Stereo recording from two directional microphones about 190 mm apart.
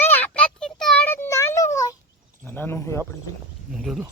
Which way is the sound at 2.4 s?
10° left (ahead or behind).